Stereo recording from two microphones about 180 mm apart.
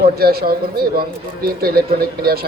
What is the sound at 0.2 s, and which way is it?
Speech, 55° right (ahead or behind).